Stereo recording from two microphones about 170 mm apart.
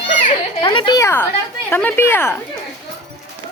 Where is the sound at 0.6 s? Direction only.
25° left (ahead or behind).